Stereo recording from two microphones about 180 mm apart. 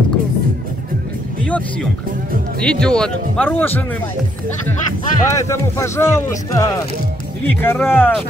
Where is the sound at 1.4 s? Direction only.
5° left (ahead or behind).